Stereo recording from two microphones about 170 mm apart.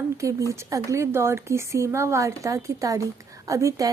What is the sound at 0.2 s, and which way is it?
A woman's voice, 20° right (ahead or behind).